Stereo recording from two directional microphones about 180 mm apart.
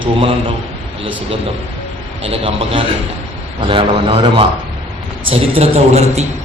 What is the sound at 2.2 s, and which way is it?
A man's voice, 30° right (ahead or behind).